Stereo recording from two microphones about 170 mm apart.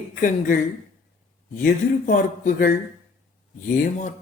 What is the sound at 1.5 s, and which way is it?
A woman's voice, 50° left (ahead or behind).